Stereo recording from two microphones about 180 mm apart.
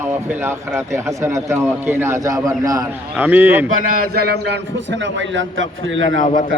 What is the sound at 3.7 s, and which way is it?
A man's voice, 50° right (ahead or behind).